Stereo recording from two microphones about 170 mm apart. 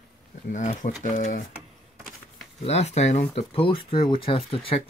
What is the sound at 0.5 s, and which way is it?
Speech, 45° left (ahead or behind).